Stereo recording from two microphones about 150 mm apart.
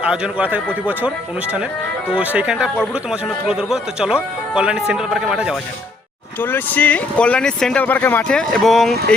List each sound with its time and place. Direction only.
0.0 s a man's voice: 5° right (ahead or behind)
2.1 s a man's voice: 10° right (ahead or behind)
6.4 s speech: 10° left (ahead or behind)